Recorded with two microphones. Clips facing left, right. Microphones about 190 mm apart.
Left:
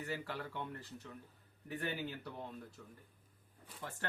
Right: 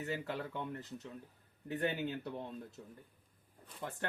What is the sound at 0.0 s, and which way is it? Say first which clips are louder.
Speech: right 3 dB; 20° right (ahead or behind).